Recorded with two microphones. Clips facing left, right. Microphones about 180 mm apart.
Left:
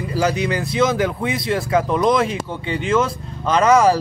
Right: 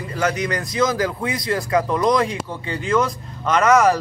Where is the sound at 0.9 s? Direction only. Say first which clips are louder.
Left 2 dB; centre (ahead or behind).